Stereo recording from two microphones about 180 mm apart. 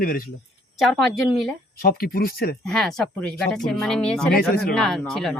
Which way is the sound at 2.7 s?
5° left (ahead or behind).